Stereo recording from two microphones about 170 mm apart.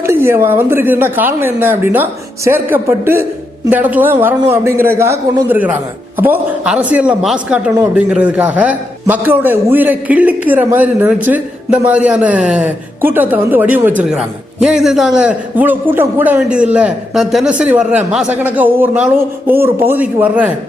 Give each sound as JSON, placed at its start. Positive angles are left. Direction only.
{"t": 0.0, "sound": "a man's voice", "side_deg": -15}